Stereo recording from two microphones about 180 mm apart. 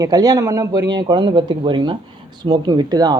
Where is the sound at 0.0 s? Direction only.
20° right (ahead or behind).